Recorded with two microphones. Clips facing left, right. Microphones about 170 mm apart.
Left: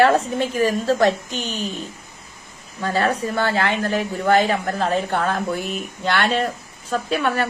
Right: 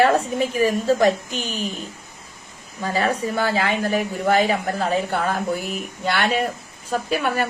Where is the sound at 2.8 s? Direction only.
10° right (ahead or behind).